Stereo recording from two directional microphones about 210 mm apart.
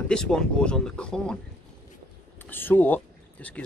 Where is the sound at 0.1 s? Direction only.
5° left (ahead or behind).